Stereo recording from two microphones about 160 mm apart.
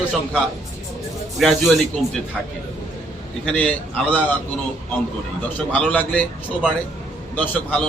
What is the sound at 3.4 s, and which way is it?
Speech, 10° left (ahead or behind).